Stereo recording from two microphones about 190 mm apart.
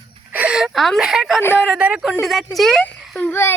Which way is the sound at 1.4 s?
10° left (ahead or behind).